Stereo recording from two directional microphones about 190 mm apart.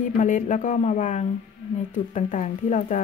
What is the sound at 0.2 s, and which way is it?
Speech, 40° left (ahead or behind).